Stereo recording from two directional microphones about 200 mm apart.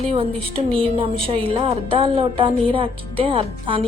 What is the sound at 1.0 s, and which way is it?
Speech, 30° right (ahead or behind).